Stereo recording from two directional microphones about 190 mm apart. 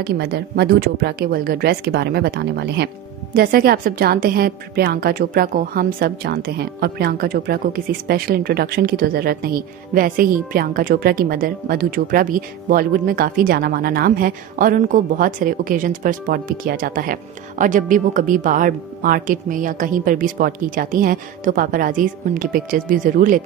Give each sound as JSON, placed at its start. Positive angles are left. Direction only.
{"t": 0.0, "sound": "a woman's voice", "side_deg": -55}